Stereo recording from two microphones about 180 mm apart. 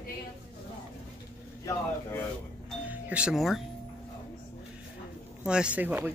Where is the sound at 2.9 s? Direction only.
5° right (ahead or behind).